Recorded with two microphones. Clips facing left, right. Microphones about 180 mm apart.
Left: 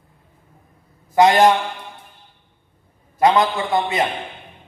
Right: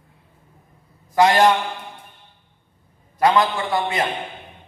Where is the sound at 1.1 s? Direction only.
20° left (ahead or behind).